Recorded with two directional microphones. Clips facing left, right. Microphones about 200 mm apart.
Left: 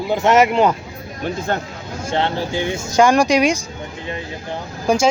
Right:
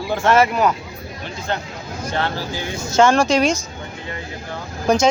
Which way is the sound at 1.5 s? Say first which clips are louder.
Left 1 dB; 50° left (ahead or behind).